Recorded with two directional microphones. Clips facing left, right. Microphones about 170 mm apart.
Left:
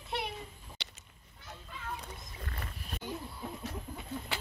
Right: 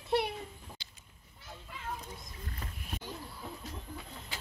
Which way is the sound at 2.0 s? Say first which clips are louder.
Left 1 dB; 70° left (ahead or behind).